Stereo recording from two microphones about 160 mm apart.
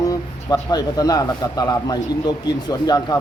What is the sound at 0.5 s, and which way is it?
A man's voice, 25° left (ahead or behind).